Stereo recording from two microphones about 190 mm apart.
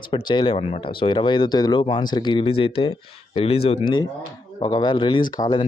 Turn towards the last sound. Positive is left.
turn(degrees=25)  # may be behind; listen again after turning